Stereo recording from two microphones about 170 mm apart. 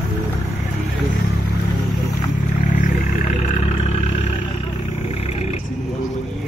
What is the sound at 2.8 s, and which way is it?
Vehicle, 50° left (ahead or behind).